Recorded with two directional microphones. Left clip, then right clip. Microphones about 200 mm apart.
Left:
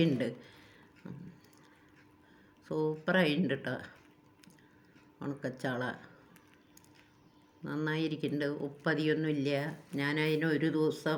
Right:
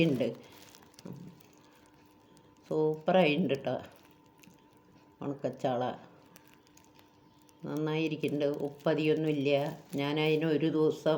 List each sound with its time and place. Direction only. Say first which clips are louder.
2.6 s speech: right 4 dB; 20° left (ahead or behind)
5.2 s speech: right 4 dB; 20° left (ahead or behind)
7.6 s speech: right 2 dB; 20° left (ahead or behind)